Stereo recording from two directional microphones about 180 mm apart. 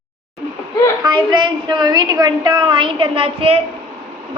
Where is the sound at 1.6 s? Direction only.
25° right (ahead or behind).